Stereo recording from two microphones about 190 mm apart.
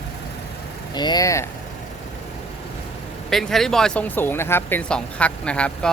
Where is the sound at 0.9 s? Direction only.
20° left (ahead or behind).